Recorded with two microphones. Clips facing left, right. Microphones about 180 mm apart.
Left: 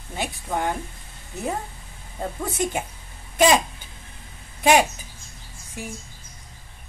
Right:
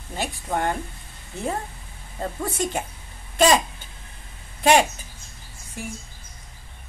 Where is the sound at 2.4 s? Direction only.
15° left (ahead or behind).